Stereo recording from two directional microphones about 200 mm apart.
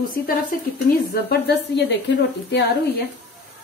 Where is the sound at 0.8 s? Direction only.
50° left (ahead or behind).